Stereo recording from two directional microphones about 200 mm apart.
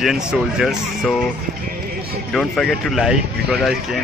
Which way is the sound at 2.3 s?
Centre (ahead or behind).